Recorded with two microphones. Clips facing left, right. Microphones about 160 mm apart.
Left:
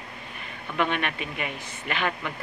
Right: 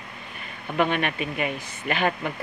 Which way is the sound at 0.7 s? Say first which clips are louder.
Right 3 dB; 40° right (ahead or behind).